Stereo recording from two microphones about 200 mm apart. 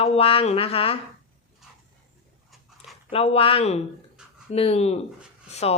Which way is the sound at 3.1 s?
30° left (ahead or behind).